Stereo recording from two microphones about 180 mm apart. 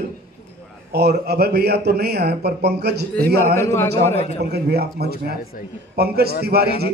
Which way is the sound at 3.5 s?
15° left (ahead or behind).